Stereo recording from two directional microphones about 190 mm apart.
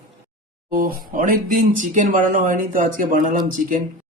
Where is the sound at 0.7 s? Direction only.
50° right (ahead or behind).